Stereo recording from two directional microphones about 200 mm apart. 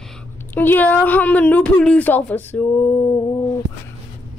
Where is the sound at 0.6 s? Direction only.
10° left (ahead or behind).